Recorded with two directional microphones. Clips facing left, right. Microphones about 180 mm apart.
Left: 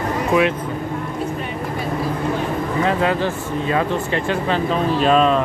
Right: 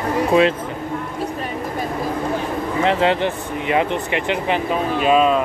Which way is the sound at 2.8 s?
25° right (ahead or behind).